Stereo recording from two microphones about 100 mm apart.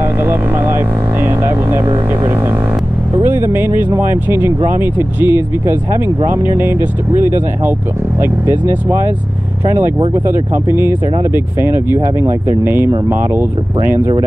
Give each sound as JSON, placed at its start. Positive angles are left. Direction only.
{"t": 0.0, "sound": "speech", "side_deg": -20}
{"t": 3.2, "sound": "speech", "side_deg": -25}
{"t": 8.2, "sound": "speech", "side_deg": -25}
{"t": 10.1, "sound": "speech", "side_deg": -25}